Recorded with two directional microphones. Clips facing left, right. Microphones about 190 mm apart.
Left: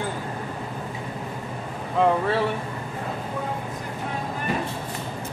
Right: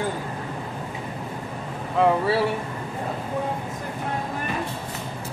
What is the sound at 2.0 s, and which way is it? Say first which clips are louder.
Speech: right 1 dB; 5° right (ahead or behind).